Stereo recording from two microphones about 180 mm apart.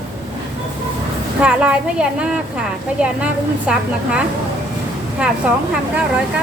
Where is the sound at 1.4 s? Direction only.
5° right (ahead or behind).